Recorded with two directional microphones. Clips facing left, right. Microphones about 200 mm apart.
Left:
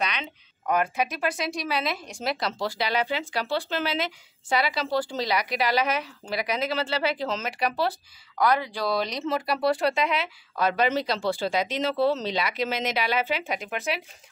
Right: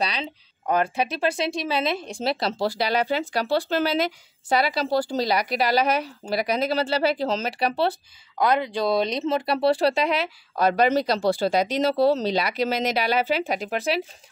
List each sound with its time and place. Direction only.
0.0 s speech: 35° right (ahead or behind)